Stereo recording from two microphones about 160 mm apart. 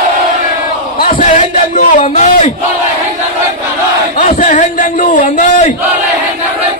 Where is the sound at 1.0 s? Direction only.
55° left (ahead or behind).